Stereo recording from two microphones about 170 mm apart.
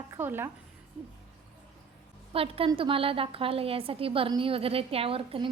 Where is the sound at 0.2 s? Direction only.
15° right (ahead or behind).